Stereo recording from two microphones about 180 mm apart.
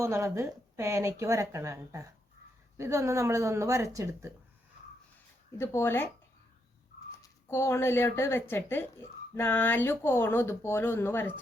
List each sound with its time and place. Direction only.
0.0 s speech: 15° right (ahead or behind)
5.5 s speech: 15° left (ahead or behind)
7.2 s speech: 15° left (ahead or behind)